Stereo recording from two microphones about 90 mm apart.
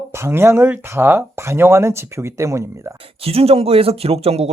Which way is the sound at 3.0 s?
90° right.